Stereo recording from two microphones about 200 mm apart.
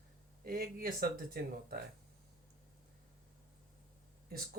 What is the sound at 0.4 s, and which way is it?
Speech, 50° right (ahead or behind).